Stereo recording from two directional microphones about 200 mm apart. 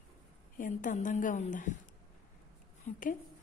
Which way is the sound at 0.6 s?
40° left (ahead or behind).